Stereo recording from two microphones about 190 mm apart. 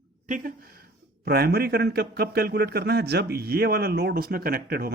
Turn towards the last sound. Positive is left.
turn(degrees=-55)  # may be behind; listen again after turning